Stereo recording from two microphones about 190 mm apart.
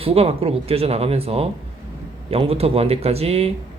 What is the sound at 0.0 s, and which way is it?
Speech, 30° right (ahead or behind).